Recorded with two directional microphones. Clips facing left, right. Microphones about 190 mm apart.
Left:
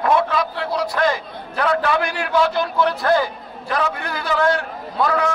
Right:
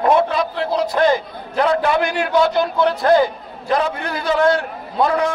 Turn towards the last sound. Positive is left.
turn(degrees=-25)  # may be behind; listen again after turning